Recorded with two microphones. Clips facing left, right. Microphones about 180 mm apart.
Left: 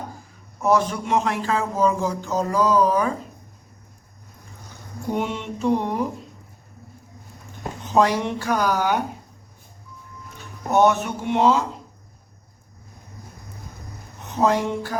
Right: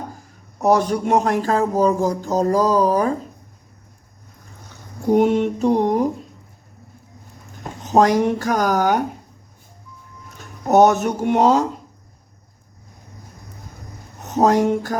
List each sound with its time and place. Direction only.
0.6 s speech: 40° right (ahead or behind)
5.1 s speech: 40° right (ahead or behind)
7.9 s a woman's voice: 45° right (ahead or behind)
10.3 s speech: 40° right (ahead or behind)
14.2 s speech: 45° right (ahead or behind)